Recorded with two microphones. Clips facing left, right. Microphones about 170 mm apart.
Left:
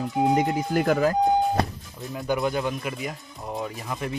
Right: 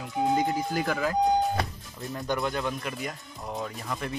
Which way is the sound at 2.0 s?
5° left (ahead or behind).